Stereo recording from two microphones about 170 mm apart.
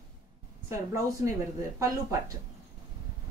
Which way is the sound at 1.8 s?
20° right (ahead or behind).